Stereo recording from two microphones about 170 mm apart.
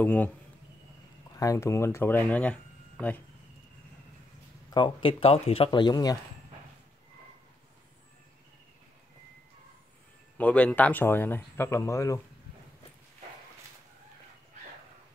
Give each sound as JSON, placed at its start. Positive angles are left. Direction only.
{"t": 0.0, "sound": "speech", "side_deg": 10}
{"t": 1.3, "sound": "speech", "side_deg": 20}
{"t": 4.6, "sound": "speech", "side_deg": 30}
{"t": 10.3, "sound": "speech", "side_deg": 10}